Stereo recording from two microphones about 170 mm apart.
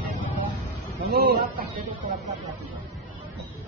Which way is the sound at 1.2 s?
60° right (ahead or behind).